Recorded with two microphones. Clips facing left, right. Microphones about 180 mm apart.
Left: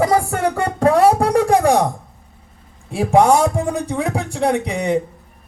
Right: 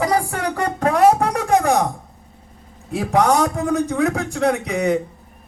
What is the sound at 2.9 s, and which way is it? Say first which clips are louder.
Speech: left 4 dB; 30° left (ahead or behind).